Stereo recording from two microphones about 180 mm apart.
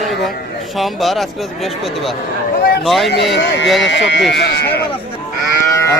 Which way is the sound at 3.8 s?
80° left.